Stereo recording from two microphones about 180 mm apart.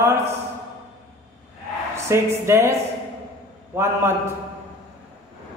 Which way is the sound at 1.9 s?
15° right (ahead or behind).